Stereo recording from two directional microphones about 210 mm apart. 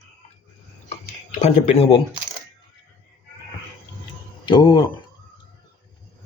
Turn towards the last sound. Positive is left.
turn(degrees=20)  # may be behind; listen again after turning